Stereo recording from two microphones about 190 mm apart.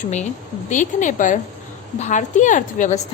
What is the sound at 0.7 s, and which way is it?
A woman's voice, 40° left (ahead or behind).